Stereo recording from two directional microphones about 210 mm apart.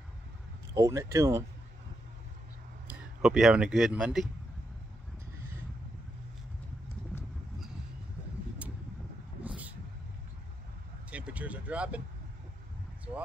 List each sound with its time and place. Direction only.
0.7 s speech: 15° right (ahead or behind)
2.9 s a man's voice: 5° right (ahead or behind)
9.4 s vehicle: 5° right (ahead or behind)
11.1 s vehicle: 5° right (ahead or behind)